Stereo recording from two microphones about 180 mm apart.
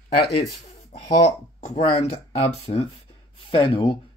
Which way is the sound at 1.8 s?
35° left (ahead or behind).